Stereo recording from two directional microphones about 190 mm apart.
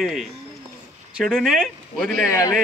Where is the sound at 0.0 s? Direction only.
Centre (ahead or behind).